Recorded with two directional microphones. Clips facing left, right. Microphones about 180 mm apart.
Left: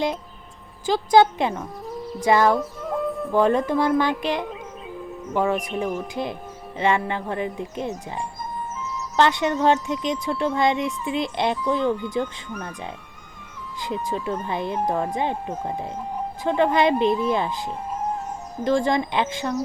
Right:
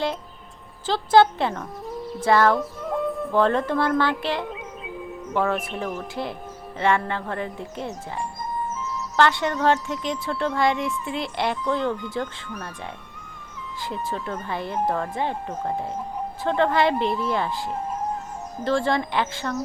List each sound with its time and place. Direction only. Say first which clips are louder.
0.9 s speech: left 1 dB; 15° left (ahead or behind)
1.8 s bird: even; centre (ahead or behind)
2.2 s speech: left 1 dB; 15° left (ahead or behind)
2.5 s music: left 1 dB; centre (ahead or behind)
3.3 s speech: left 2 dB; 15° left (ahead or behind)
4.4 s music: even; centre (ahead or behind)
5.3 s speech: left 1 dB; 15° left (ahead or behind)
5.5 s speech: left 3 dB; centre (ahead or behind)
6.7 s music: even; 20° left (ahead or behind)
7.1 s speech: left 2 dB; 15° left (ahead or behind)